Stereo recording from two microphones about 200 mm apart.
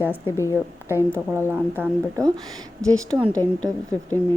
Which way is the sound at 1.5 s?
10° right (ahead or behind).